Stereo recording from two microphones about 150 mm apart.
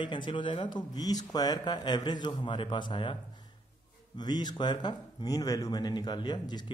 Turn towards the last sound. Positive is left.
turn(degrees=30)  # may be behind; listen again after turning